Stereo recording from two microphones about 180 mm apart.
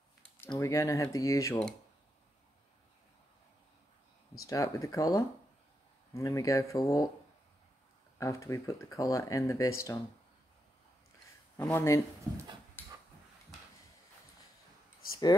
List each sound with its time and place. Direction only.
0.4 s speech: 15° left (ahead or behind)
4.5 s speech: 20° left (ahead or behind)
8.2 s speech: 15° left (ahead or behind)
11.5 s speech: 15° left (ahead or behind)
12.8 s a sound: 10° left (ahead or behind)